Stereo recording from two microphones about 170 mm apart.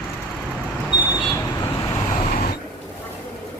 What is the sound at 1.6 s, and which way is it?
Vehicle, 20° left (ahead or behind).